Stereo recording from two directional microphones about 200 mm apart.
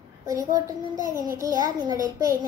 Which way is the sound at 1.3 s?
15° right (ahead or behind).